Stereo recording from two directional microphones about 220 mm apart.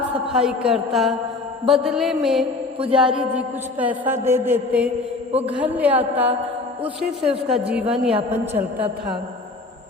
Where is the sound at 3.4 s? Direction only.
10° right (ahead or behind).